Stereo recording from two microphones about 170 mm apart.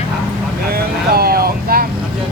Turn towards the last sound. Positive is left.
turn(degrees=-60)  # may be behind; listen again after turning